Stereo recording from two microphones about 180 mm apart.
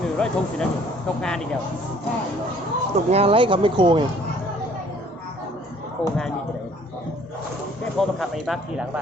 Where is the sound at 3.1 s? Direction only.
30° right (ahead or behind).